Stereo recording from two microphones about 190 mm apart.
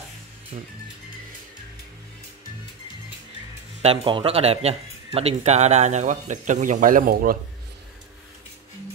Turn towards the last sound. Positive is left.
turn(degrees=-50)  # may be behind; listen again after turning